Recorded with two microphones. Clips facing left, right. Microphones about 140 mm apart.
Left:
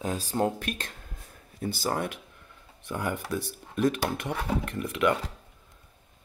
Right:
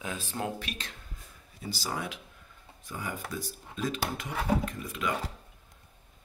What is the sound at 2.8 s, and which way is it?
Speech, 65° left (ahead or behind).